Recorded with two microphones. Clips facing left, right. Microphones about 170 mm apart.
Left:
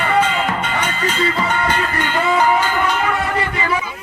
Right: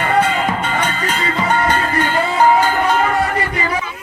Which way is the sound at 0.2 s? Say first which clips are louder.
Right 1 dB; 45° right (ahead or behind).